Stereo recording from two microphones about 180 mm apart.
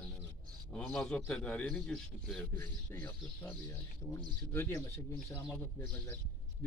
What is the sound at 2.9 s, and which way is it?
Speech, 15° left (ahead or behind).